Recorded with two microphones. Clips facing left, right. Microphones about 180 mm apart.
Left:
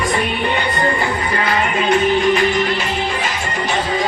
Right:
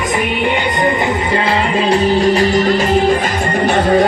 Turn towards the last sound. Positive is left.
turn(degrees=-60)  # may be behind; listen again after turning